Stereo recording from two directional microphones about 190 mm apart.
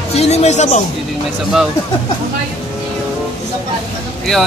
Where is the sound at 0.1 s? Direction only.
35° left (ahead or behind).